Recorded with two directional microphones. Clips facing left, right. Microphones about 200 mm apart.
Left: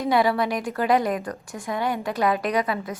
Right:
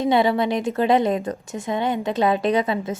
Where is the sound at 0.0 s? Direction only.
25° right (ahead or behind).